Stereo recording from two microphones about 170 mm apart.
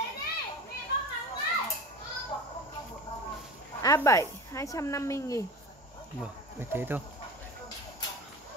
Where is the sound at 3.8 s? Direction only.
20° left (ahead or behind).